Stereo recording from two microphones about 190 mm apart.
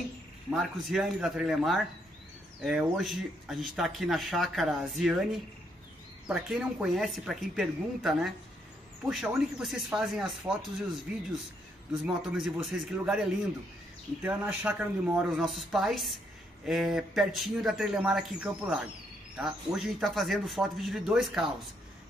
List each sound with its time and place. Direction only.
0.5 s speech: centre (ahead or behind)
12.0 s speech: 5° right (ahead or behind)